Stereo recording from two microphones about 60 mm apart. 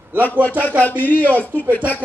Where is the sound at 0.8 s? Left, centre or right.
Left.